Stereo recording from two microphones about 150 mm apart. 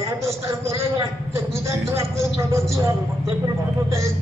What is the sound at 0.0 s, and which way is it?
A man's voice, 20° right (ahead or behind).